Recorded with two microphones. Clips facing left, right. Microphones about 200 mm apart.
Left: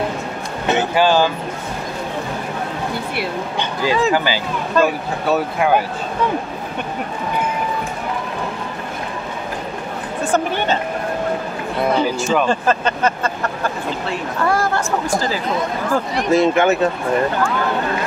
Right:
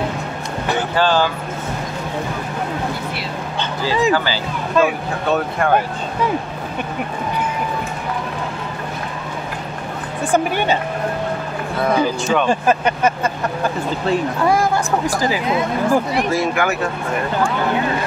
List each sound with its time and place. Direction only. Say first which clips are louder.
0.7 s a sound: left 3 dB; 20° left (ahead or behind)
1.0 s speech: left 1 dB; 10° left (ahead or behind)
4.1 s speech: even; 15° left (ahead or behind)
4.7 s speech: even; centre (ahead or behind)
10.3 s speech: right 2 dB; 10° right (ahead or behind)
12.2 s speech: even; 5° left (ahead or behind)
12.4 s speech: right 1 dB; 15° right (ahead or behind)
14.4 s speech: left 2 dB; 15° right (ahead or behind)
16.3 s speech: left 5 dB; 20° left (ahead or behind)